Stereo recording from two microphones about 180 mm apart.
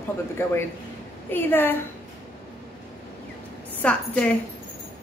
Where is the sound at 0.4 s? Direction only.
15° left (ahead or behind).